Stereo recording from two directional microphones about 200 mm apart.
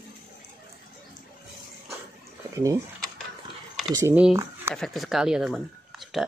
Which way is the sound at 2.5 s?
15° right (ahead or behind).